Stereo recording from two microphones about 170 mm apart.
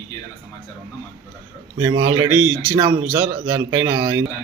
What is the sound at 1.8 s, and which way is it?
A man's voice, 15° right (ahead or behind).